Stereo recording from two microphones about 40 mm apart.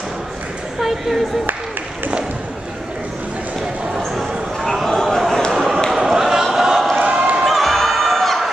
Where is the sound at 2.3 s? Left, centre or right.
Right.